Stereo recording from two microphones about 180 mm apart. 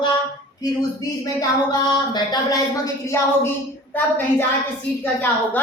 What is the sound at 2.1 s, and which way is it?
A woman's voice, 20° left (ahead or behind).